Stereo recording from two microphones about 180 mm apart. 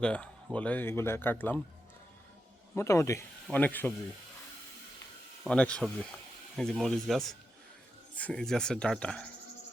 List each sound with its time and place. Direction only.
0.0 s speech: 5° left (ahead or behind)
2.7 s speech: 15° left (ahead or behind)
5.4 s speech: 5° left (ahead or behind)